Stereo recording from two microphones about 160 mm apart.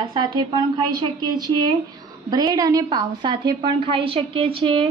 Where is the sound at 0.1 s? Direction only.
25° right (ahead or behind).